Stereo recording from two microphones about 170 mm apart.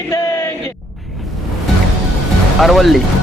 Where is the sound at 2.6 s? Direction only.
Centre (ahead or behind).